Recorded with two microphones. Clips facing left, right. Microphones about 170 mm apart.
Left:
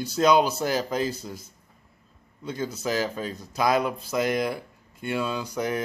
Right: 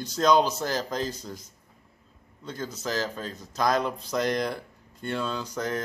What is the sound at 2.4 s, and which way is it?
Speech, 10° left (ahead or behind).